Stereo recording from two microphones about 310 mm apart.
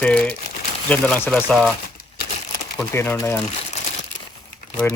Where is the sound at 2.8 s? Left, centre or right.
Centre.